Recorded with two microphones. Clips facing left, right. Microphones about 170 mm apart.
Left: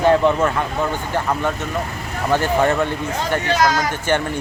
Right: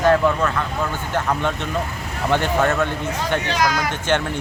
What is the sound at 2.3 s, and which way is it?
Speech, 10° left (ahead or behind).